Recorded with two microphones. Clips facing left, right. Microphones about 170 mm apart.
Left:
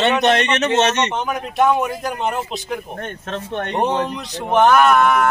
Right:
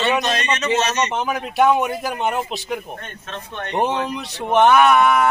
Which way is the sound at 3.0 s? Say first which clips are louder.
Left 6 dB; 60° left (ahead or behind).